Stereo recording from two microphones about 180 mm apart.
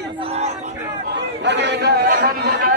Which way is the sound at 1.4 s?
75° right (ahead or behind).